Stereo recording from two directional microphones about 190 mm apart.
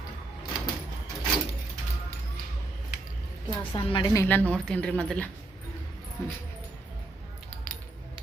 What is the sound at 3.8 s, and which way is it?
Speech, 25° left (ahead or behind).